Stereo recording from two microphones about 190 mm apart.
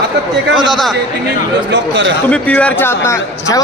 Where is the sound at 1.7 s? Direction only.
70° right (ahead or behind).